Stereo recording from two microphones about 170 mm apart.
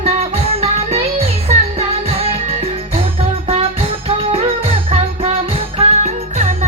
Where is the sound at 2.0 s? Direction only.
35° right (ahead or behind).